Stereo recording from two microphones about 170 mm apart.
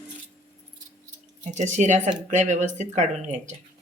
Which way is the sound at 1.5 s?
45° right (ahead or behind).